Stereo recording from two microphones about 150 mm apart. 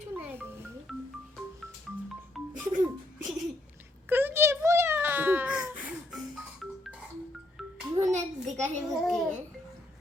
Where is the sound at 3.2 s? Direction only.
Centre (ahead or behind).